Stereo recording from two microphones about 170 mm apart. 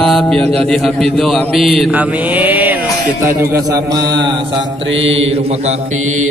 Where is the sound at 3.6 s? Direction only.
20° right (ahead or behind).